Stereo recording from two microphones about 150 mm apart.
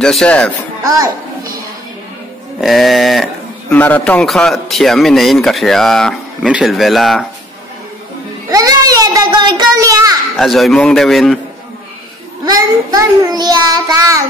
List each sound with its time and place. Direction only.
0.0 s a man's voice: 5° left (ahead or behind)
0.8 s a child's voice: 25° right (ahead or behind)
2.6 s a man's voice: centre (ahead or behind)
3.7 s a man's voice: 10° left (ahead or behind)
8.5 s a child's voice: 25° right (ahead or behind)
10.3 s a man's voice: centre (ahead or behind)
12.4 s child singing: 25° right (ahead or behind)